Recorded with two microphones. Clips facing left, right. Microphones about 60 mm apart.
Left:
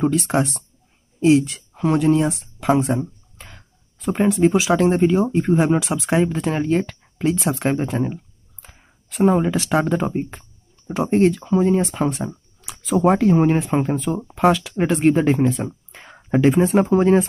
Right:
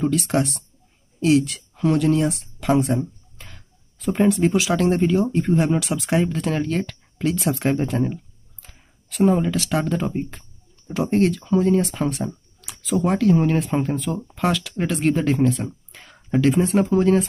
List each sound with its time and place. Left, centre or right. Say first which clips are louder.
0.0 s speech: left 2 dB; centre
3.3 s a sound: left 2 dB; centre
4.5 s speech: left 3 dB; centre